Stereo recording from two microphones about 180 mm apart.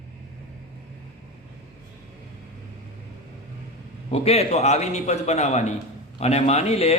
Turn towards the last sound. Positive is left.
turn(degrees=35)  # may be behind; listen again after turning